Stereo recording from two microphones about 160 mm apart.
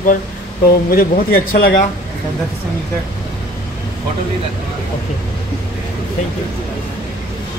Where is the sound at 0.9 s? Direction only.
65° left (ahead or behind).